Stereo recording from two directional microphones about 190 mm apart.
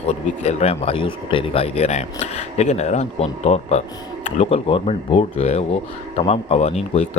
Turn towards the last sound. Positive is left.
turn(degrees=35)  # may be behind; listen again after turning